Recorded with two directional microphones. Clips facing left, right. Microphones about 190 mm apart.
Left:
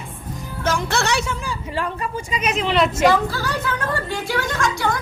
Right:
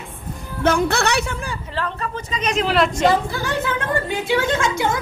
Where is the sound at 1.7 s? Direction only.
10° left (ahead or behind).